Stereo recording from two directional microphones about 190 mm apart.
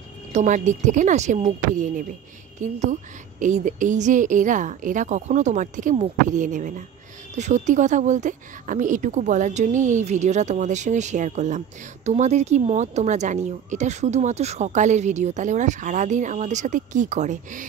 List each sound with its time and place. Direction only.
0.3 s a woman's voice: 40° right (ahead or behind)